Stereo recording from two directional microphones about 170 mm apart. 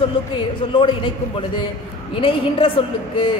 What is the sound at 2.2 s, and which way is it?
A woman's voice, 30° left (ahead or behind).